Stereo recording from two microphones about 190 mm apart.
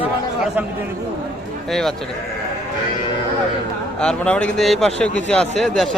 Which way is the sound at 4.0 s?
5° left (ahead or behind).